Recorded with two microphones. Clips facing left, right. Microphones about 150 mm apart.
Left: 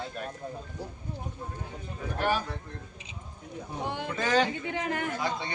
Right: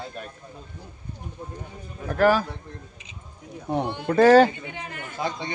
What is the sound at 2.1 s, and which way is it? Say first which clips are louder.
Speech: right 9 dB; 90° right.